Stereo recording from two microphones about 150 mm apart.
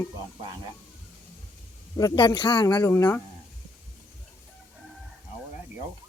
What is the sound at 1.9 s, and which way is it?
Speech, 25° left (ahead or behind).